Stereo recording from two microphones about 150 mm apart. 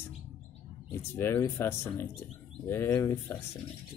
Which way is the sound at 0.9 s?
15° left (ahead or behind).